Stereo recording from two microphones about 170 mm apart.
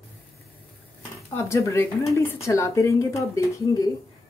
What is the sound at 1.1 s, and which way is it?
Speech, 15° left (ahead or behind).